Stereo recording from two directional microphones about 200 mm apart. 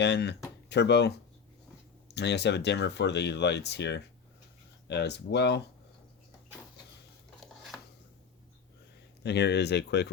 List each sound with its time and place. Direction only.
0.0 s speech: 60° left (ahead or behind)
9.2 s speech: 55° left (ahead or behind)